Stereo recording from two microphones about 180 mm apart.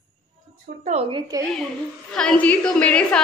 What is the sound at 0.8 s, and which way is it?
Speech, 35° right (ahead or behind).